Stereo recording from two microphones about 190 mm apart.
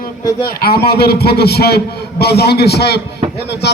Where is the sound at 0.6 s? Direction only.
55° left (ahead or behind).